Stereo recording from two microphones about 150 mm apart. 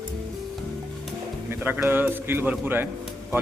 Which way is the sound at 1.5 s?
15° right (ahead or behind).